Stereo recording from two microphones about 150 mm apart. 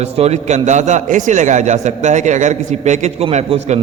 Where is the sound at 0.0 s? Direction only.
45° right (ahead or behind).